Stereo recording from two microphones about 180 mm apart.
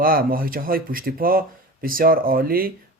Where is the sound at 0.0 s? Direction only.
55° right (ahead or behind).